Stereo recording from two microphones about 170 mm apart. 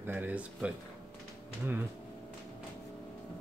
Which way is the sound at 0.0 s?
10° right (ahead or behind).